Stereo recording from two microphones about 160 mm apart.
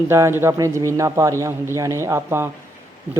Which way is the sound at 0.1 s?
15° right (ahead or behind).